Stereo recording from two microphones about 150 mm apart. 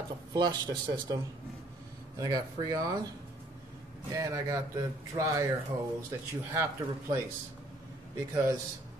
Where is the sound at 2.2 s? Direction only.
25° right (ahead or behind).